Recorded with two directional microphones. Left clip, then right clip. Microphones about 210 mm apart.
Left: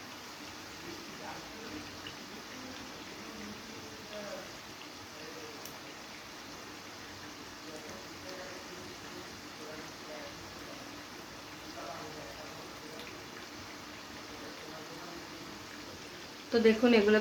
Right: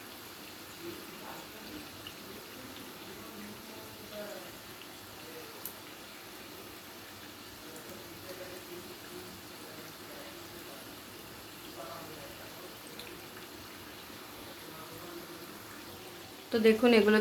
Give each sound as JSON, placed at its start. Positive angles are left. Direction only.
{"t": 16.5, "sound": "speech", "side_deg": -30}